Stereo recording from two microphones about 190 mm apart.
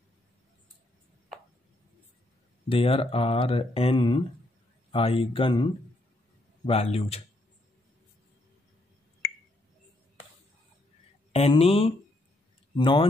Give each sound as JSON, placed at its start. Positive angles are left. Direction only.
{"t": 2.7, "sound": "speech", "side_deg": 30}
{"t": 11.3, "sound": "speech", "side_deg": 30}